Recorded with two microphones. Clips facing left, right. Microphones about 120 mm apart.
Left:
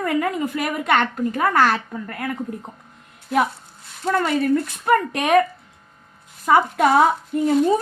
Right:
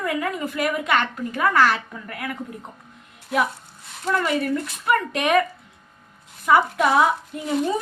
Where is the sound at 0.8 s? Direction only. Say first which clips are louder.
Left 3 dB; 55° left (ahead or behind); by 2.4 s 40° left (ahead or behind).